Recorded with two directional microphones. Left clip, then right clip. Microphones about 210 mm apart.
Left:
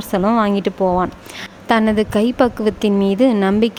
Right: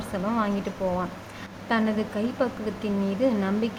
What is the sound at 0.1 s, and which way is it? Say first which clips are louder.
A woman's voice: left 12 dB; 50° left (ahead or behind).